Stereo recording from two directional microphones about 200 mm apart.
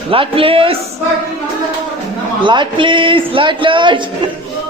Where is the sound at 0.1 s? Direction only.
25° right (ahead or behind).